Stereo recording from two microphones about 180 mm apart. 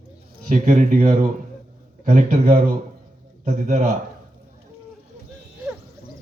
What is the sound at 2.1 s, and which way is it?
A man's voice, 45° right (ahead or behind).